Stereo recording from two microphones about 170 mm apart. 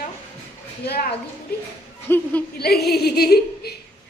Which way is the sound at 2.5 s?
70° left (ahead or behind).